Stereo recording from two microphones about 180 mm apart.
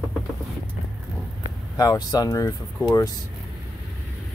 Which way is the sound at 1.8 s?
20° left (ahead or behind).